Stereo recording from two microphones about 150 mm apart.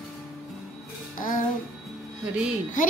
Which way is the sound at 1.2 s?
65° left (ahead or behind).